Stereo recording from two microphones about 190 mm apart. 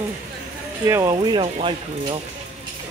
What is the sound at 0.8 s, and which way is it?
Speech, 15° right (ahead or behind).